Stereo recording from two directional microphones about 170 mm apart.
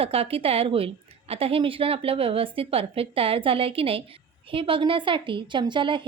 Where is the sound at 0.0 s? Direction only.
35° right (ahead or behind).